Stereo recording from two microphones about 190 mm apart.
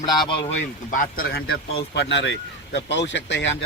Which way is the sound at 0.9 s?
50° left (ahead or behind).